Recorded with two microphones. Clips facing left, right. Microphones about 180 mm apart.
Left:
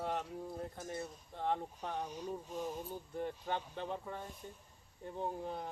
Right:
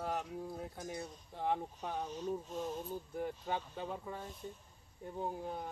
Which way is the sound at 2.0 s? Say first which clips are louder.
Right 3 dB; 10° left (ahead or behind).